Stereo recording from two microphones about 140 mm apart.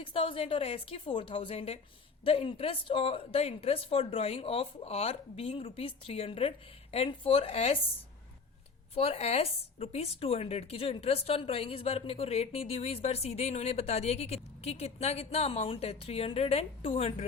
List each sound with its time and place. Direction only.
0.0 s a woman's voice: 40° left (ahead or behind)
9.0 s speech: 45° left (ahead or behind)